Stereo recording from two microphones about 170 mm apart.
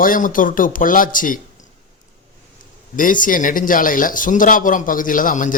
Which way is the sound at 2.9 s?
50° left (ahead or behind).